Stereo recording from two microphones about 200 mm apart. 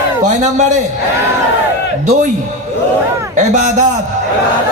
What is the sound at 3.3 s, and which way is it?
Speech, 35° right (ahead or behind).